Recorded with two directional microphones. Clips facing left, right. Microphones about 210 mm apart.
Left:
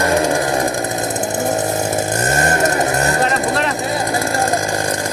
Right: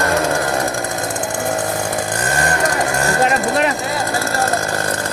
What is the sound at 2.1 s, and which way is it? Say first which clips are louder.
Vehicle: left 2 dB; 25° left (ahead or behind).